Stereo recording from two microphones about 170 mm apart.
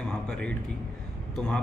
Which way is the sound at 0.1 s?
5° left (ahead or behind).